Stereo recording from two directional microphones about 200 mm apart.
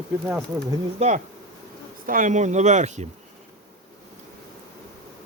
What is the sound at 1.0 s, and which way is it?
Speech, 35° right (ahead or behind).